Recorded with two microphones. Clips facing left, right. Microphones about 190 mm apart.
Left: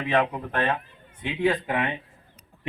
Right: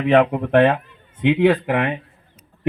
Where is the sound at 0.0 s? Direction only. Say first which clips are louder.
Right 9 dB; 60° right (ahead or behind).